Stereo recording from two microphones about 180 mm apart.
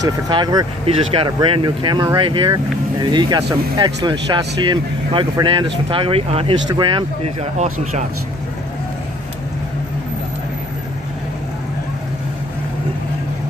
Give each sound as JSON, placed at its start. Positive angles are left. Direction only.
{"t": 0.0, "sound": "speech", "side_deg": -25}
{"t": 7.5, "sound": "speech", "side_deg": -40}